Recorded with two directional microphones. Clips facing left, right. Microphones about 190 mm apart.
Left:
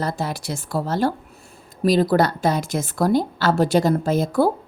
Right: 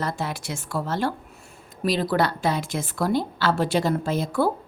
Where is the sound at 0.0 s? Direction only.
35° left (ahead or behind).